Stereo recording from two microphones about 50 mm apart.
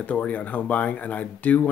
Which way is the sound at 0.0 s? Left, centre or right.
Left.